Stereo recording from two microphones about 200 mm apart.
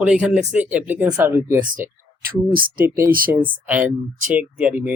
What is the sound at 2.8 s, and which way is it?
Speech, 15° right (ahead or behind).